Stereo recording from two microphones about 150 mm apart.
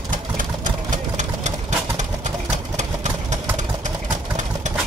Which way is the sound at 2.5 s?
50° right (ahead or behind).